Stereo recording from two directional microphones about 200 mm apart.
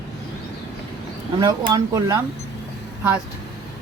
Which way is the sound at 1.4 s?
20° right (ahead or behind).